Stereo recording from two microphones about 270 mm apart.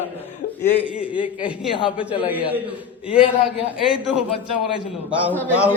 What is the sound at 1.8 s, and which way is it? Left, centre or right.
Speech, centre.